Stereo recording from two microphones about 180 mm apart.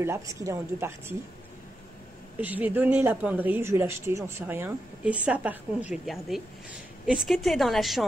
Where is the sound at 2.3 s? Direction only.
10° right (ahead or behind).